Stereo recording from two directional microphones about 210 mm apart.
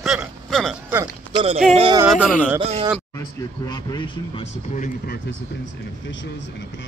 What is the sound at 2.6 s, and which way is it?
Speech, 30° right (ahead or behind).